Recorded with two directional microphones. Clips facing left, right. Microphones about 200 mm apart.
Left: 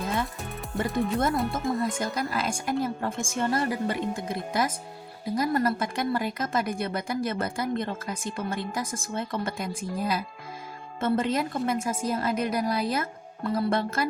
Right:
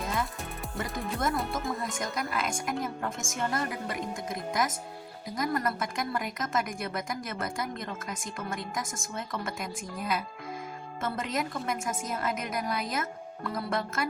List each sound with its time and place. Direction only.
0.7 s speech: centre (ahead or behind)
2.0 s speech: 30° left (ahead or behind)